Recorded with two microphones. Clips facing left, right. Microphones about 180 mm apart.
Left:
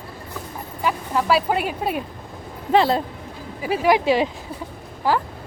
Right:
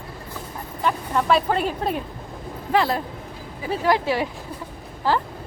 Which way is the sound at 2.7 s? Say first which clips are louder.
Left 4 dB; 25° left (ahead or behind).